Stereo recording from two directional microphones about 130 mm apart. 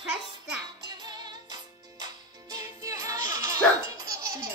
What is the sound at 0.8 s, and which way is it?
Music, 35° right (ahead or behind).